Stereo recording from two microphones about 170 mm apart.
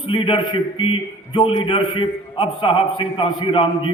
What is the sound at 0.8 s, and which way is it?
A man's voice, 30° left (ahead or behind).